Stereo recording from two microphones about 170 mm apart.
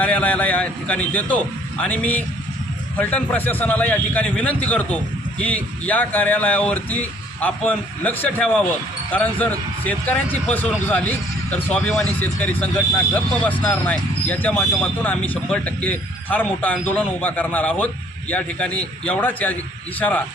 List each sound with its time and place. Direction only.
0.0 s speech: 10° left (ahead or behind)